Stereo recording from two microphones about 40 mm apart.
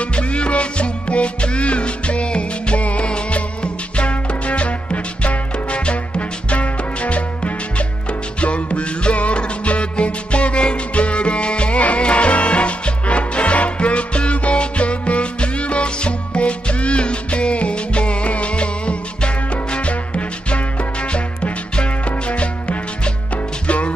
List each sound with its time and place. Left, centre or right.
0.0 s music: left